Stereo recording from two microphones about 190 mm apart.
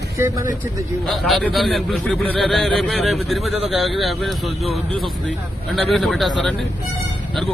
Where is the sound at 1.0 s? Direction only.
Centre (ahead or behind).